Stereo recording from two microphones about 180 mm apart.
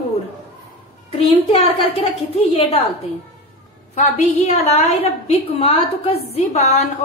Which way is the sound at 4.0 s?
40° left (ahead or behind).